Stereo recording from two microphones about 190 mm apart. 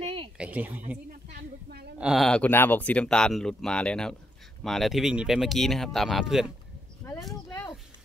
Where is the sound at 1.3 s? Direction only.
55° right (ahead or behind).